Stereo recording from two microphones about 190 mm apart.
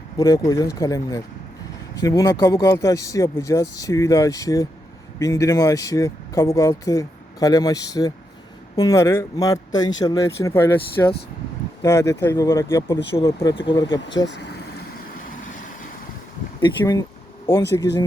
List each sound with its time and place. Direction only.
0.2 s speech: 15° left (ahead or behind)
13.4 s speech: 25° left (ahead or behind)
14.3 s speech: 65° left (ahead or behind)
16.6 s speech: 25° left (ahead or behind)